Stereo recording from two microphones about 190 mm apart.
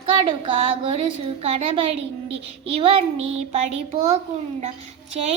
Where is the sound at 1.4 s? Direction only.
30° right (ahead or behind).